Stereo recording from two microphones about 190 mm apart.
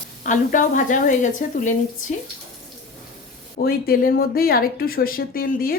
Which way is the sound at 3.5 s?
50° left (ahead or behind).